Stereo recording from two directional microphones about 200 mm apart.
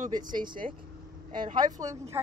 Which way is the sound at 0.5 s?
25° right (ahead or behind).